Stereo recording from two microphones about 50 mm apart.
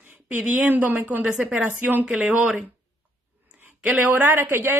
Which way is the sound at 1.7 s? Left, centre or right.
Right.